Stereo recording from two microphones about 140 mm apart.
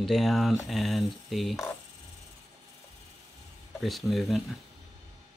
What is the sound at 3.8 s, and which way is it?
Speech, centre (ahead or behind).